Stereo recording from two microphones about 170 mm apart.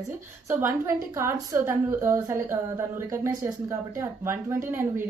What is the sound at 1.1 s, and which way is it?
A woman's voice, 15° right (ahead or behind).